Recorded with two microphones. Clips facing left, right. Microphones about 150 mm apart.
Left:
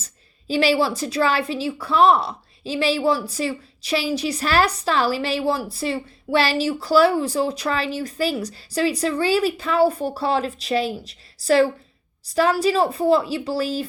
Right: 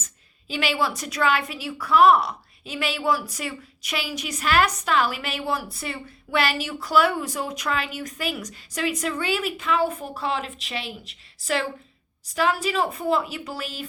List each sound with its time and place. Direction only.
0.0 s a woman's voice: 35° left (ahead or behind)